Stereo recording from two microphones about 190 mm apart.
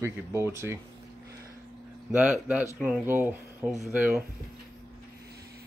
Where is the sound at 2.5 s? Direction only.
10° right (ahead or behind).